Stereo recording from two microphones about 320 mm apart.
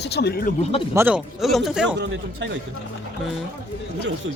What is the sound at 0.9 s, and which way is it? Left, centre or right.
Speech, centre.